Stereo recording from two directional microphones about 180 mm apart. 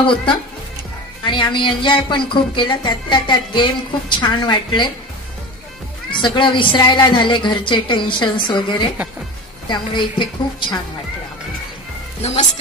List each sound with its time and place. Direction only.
0.0 s a woman's voice: 25° left (ahead or behind)
6.2 s a woman's voice: 25° left (ahead or behind)
12.2 s a woman's voice: 40° left (ahead or behind)